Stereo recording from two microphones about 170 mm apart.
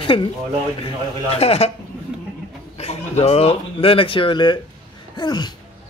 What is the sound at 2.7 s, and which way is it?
Speech, 35° left (ahead or behind).